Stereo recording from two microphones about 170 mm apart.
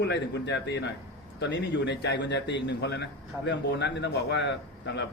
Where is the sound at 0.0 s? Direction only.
90° left.